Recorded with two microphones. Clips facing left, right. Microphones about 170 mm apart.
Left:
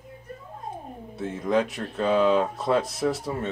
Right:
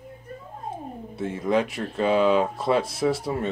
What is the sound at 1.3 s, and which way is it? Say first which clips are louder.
Speech: even; 5° right (ahead or behind).